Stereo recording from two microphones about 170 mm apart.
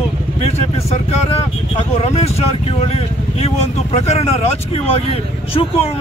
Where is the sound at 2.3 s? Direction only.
35° left (ahead or behind).